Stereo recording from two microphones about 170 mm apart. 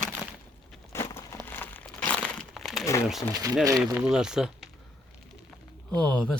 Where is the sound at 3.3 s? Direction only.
20° right (ahead or behind).